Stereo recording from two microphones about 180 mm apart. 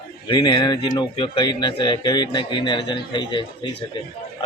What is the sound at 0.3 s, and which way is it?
Speech, 25° left (ahead or behind).